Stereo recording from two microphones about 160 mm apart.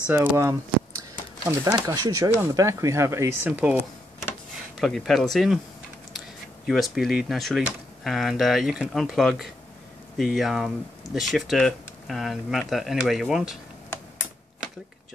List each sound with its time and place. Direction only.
0.0 s speech: 10° right (ahead or behind)
4.7 s speech: centre (ahead or behind)